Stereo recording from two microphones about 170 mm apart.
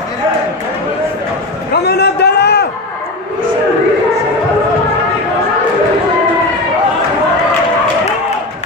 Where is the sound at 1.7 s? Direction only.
75° left (ahead or behind).